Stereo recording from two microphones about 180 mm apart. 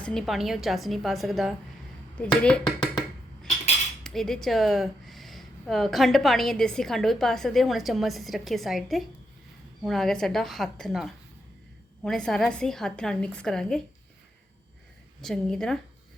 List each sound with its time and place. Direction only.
0.0 s speech: centre (ahead or behind)
4.0 s speech: centre (ahead or behind)
15.2 s speech: centre (ahead or behind)